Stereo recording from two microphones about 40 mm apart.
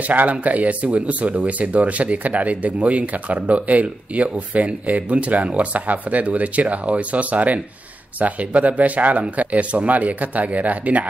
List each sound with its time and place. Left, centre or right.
0.1 s speech: right